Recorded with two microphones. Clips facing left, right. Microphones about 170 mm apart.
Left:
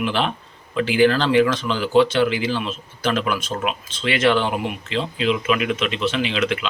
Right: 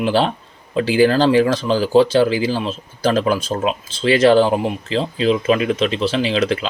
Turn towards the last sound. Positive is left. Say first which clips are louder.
# right 4 dB
turn(degrees=-35)  # may be behind; listen again after turning